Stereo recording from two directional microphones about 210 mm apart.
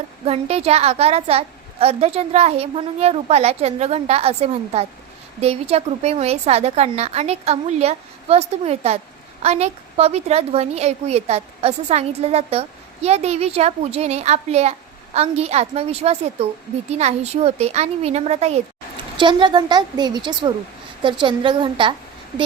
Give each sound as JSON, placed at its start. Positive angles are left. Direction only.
{"t": 0.3, "sound": "a woman's voice", "side_deg": -30}